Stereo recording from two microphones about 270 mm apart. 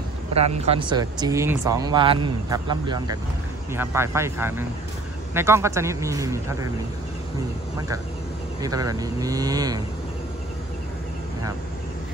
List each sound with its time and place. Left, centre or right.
0.6 s speech: right
8.5 s speech: centre